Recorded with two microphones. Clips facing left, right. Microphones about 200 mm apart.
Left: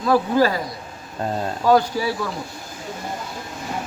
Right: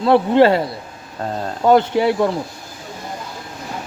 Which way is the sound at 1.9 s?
65° right (ahead or behind).